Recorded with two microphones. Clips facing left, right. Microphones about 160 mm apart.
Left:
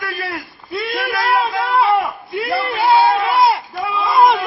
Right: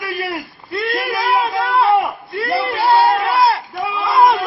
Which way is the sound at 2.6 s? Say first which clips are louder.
Even; centre (ahead or behind).